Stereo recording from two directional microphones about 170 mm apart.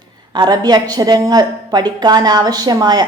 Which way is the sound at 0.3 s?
25° right (ahead or behind).